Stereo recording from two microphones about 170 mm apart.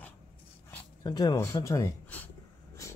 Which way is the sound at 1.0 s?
20° left (ahead or behind).